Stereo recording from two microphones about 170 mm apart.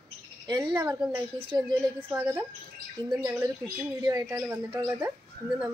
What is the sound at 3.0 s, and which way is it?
A woman's voice, 25° right (ahead or behind).